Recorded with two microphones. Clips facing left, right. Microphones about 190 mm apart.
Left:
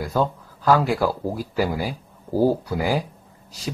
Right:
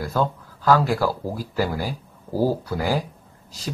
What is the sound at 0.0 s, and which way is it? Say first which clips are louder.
Speech: left 1 dB; 10° left (ahead or behind).